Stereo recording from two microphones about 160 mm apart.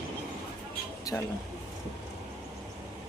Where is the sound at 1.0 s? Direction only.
20° left (ahead or behind).